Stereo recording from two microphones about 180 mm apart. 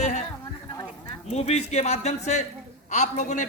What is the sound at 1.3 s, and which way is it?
A man's voice, 35° left (ahead or behind).